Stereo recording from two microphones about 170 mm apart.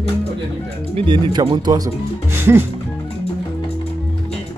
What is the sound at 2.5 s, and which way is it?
Music, 15° right (ahead or behind).